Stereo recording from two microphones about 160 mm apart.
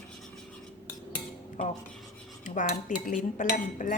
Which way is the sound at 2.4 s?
50° left (ahead or behind).